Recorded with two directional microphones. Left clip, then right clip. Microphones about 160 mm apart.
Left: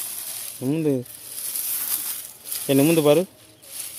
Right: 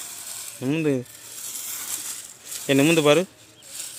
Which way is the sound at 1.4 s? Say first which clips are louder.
Left 1 dB; centre (ahead or behind).